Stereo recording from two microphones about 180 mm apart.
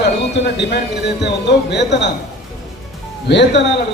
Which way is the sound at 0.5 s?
70° left (ahead or behind).